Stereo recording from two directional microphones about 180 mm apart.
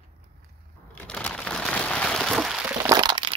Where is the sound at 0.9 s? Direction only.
5° left (ahead or behind).